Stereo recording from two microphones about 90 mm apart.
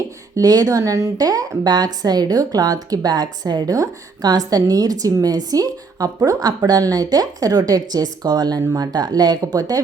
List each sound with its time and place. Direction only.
0.3 s a woman's voice: 45° right (ahead or behind)